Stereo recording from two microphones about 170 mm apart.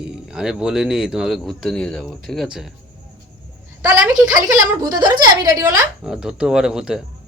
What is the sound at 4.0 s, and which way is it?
Speech, 5° right (ahead or behind).